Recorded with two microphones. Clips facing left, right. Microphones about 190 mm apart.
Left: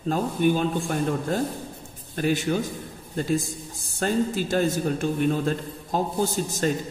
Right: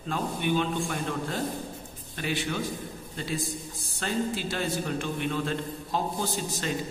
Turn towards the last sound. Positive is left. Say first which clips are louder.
# left 7 dB
turn(degrees=45)  # may be behind; listen again after turning